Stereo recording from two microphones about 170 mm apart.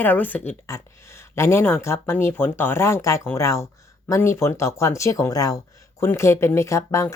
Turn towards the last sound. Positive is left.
turn(degrees=15)  # may be behind; listen again after turning